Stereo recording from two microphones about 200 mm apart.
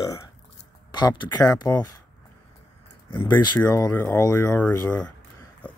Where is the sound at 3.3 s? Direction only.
20° left (ahead or behind).